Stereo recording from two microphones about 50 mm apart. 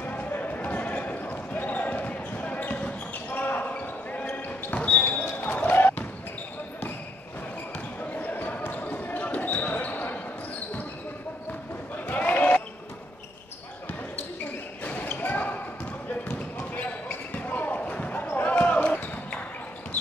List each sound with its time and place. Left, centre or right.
0.0 s basketball bounce: left
8.1 s basketball bounce: left
12.1 s basketball bounce: left
14.8 s basketball bounce: left
16.7 s basketball bounce: left